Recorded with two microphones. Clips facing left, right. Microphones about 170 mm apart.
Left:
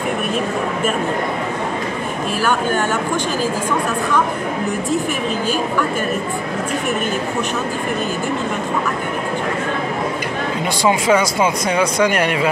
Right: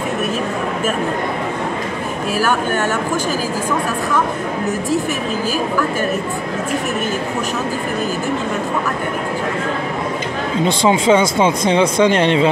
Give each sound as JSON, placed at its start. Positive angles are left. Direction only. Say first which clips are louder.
{"t": 10.8, "sound": "speech", "louder": "right 1 dB", "side_deg": -25}